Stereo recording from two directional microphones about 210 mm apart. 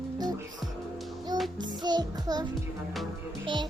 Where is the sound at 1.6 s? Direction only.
20° right (ahead or behind).